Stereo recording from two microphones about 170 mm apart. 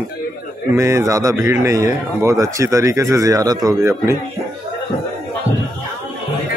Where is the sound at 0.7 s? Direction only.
15° right (ahead or behind).